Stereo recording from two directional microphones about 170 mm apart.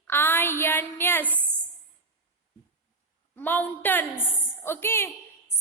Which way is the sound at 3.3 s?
10° left (ahead or behind).